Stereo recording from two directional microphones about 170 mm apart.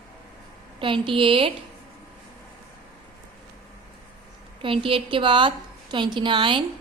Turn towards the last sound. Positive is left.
turn(degrees=-30)  # may be behind; listen again after turning